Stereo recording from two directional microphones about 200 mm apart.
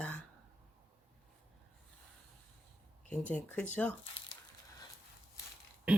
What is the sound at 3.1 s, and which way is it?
Speech, 5° left (ahead or behind).